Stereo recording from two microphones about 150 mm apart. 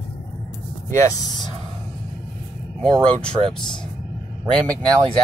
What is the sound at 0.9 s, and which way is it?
Speech, 25° left (ahead or behind).